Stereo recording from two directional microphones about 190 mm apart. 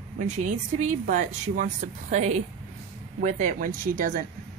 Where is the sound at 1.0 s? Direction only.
45° right (ahead or behind).